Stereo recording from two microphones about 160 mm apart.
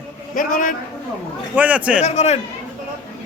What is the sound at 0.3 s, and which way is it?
Speech, 55° left (ahead or behind).